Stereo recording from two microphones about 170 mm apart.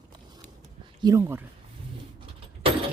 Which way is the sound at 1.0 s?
15° right (ahead or behind).